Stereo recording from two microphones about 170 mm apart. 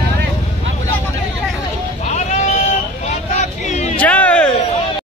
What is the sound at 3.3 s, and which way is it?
Vehicle, 45° left (ahead or behind).